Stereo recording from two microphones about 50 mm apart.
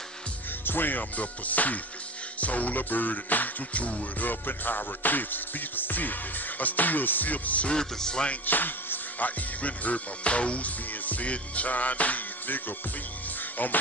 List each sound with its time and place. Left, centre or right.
0.7 s music: left
7.7 s speech: centre
8.3 s speech: left